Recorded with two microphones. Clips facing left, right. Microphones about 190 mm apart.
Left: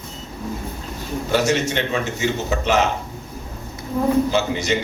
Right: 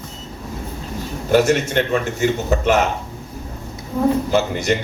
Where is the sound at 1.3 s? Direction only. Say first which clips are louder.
Right 4 dB; 55° right (ahead or behind).